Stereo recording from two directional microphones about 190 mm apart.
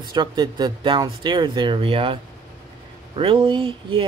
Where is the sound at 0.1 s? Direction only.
25° right (ahead or behind).